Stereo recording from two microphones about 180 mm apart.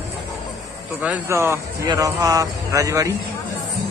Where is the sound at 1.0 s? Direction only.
10° right (ahead or behind).